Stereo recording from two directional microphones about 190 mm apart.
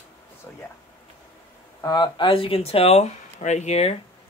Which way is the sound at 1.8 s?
20° left (ahead or behind).